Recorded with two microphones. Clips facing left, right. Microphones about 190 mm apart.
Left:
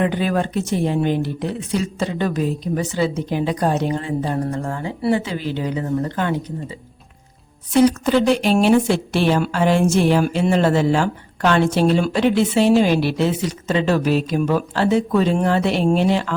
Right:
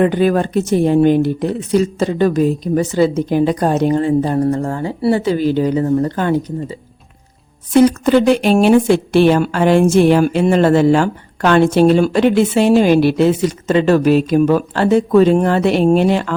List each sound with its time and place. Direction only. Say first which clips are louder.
0.0 s speech: right 6 dB; 45° right (ahead or behind)
7.7 s a woman's voice: right 4 dB; 55° right (ahead or behind)